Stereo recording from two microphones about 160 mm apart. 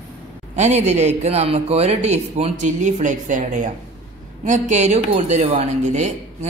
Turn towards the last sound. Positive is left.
turn(degrees=-45)  # may be behind; listen again after turning